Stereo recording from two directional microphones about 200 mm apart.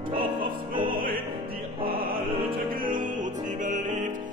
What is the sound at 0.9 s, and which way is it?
Music, 45° right (ahead or behind).